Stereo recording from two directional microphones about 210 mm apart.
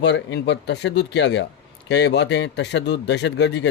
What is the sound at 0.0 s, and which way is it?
Speech, 55° left (ahead or behind).